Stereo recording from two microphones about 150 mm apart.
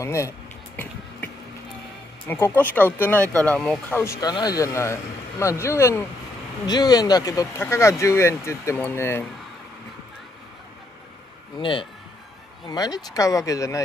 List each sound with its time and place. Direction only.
0.0 s speech: 20° left (ahead or behind)
2.2 s speech: 15° left (ahead or behind)
4.0 s speech: 20° left (ahead or behind)
11.5 s a man's voice: 35° left (ahead or behind)